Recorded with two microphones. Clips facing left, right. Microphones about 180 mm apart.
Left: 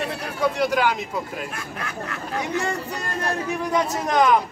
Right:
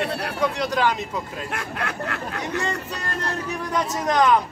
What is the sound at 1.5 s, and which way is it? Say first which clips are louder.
Speech: right 4 dB; 70° right (ahead or behind).